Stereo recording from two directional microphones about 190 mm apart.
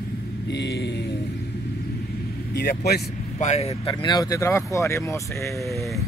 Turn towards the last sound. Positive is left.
turn(degrees=15)  # may be behind; listen again after turning